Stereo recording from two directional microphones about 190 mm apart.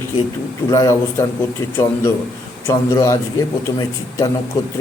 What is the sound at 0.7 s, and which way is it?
Speech, 15° left (ahead or behind).